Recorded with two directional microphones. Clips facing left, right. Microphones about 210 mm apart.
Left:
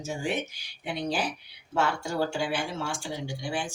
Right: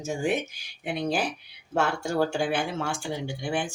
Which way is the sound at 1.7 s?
50° right (ahead or behind).